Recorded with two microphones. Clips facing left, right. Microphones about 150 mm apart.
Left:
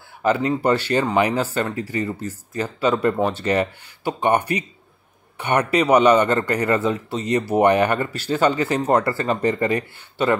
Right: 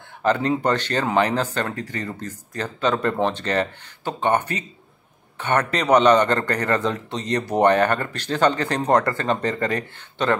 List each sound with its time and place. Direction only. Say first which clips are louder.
0.2 s a man's voice: left 1 dB; 10° left (ahead or behind)